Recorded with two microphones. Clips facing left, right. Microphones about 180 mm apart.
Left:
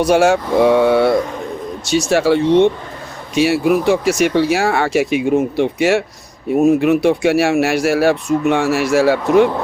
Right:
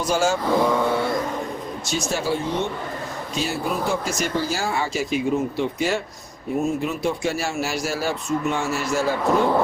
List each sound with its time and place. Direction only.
0.0 s speech: 65° left (ahead or behind)
1.8 s speech: 80° left